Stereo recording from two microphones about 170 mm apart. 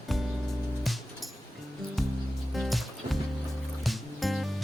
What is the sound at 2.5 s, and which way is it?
Music, centre (ahead or behind).